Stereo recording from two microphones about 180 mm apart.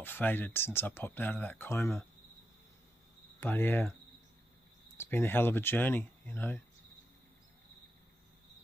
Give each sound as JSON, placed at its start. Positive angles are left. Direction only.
{"t": 0.0, "sound": "speech", "side_deg": 10}
{"t": 3.3, "sound": "speech", "side_deg": 10}
{"t": 4.9, "sound": "speech", "side_deg": 10}